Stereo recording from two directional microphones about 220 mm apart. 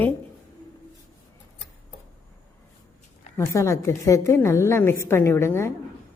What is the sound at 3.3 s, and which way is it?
A woman's voice, 15° left (ahead or behind).